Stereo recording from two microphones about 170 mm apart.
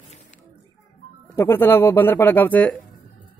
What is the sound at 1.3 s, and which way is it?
Speech, 15° left (ahead or behind).